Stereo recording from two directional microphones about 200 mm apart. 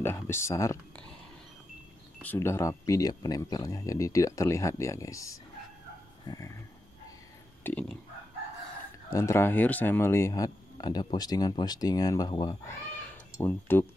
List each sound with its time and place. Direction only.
0.0 s speech: 10° left (ahead or behind)
2.2 s speech: 10° left (ahead or behind)
6.2 s a sound: 15° left (ahead or behind)
7.6 s speech: 5° left (ahead or behind)
9.1 s speech: 15° left (ahead or behind)